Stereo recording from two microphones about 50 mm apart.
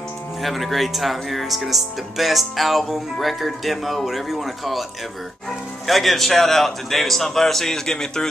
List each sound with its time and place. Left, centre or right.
0.4 s speech: centre
5.9 s speech: centre